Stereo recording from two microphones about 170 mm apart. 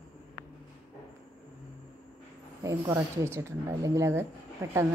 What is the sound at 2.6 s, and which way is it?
Speech, 20° right (ahead or behind).